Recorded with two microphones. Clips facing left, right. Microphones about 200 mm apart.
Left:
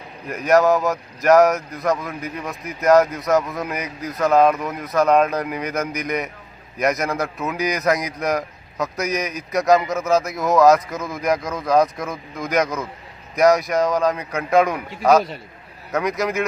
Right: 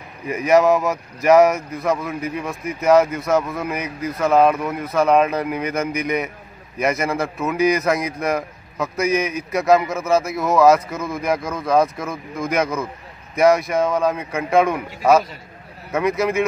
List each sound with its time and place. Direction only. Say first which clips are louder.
0.3 s speech: right 1 dB; 5° right (ahead or behind)